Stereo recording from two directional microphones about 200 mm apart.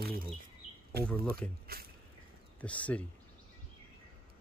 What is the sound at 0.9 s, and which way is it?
Speech, 50° right (ahead or behind).